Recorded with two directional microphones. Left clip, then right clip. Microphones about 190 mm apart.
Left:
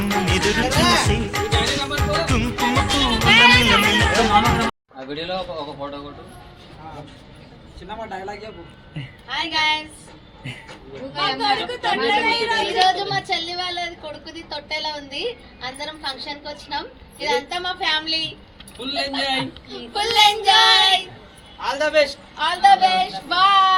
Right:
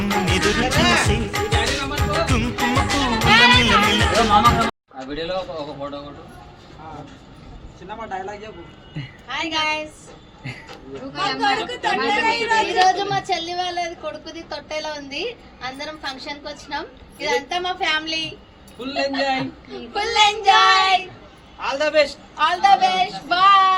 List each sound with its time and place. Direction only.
0.0 s music: centre (ahead or behind)
9.0 s a woman's voice: 5° right (ahead or behind)
11.3 s child singing: 5° right (ahead or behind)
13.1 s a woman's voice: 10° right (ahead or behind)
18.8 s child singing: 5° left (ahead or behind)
21.6 s a man's voice: 20° right (ahead or behind)
22.4 s a woman's voice: 5° right (ahead or behind)